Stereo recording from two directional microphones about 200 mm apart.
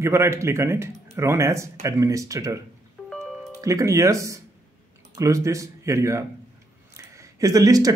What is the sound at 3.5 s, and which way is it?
Speech, 15° right (ahead or behind).